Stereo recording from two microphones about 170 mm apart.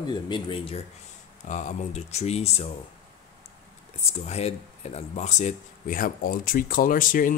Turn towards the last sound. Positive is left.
turn(degrees=55)  # may be behind; listen again after turning